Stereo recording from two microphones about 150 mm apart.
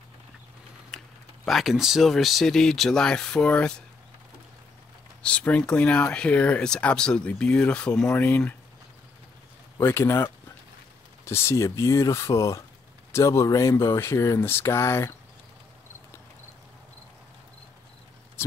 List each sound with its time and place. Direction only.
0.9 s speech: centre (ahead or behind)
5.2 s speech: 10° left (ahead or behind)
9.8 s speech: 15° left (ahead or behind)